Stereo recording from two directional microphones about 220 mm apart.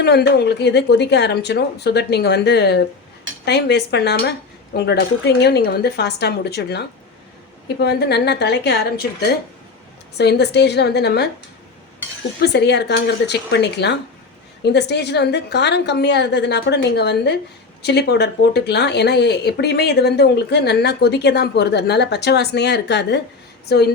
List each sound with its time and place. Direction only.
0.0 s speech: 50° left (ahead or behind)
12.4 s speech: 50° left (ahead or behind)